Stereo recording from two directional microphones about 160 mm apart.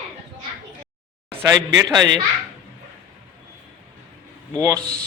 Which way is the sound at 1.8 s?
25° right (ahead or behind).